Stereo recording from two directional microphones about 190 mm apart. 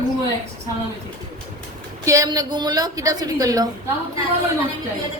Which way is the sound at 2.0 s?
20° right (ahead or behind).